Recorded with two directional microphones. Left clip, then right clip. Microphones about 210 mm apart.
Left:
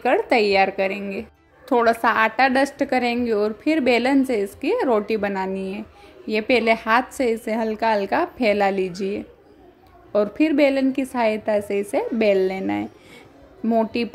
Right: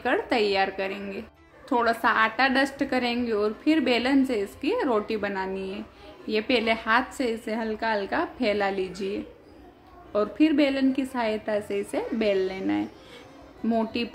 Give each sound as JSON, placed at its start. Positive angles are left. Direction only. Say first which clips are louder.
{"t": 0.0, "sound": "a woman's voice", "louder": "left 6 dB", "side_deg": 30}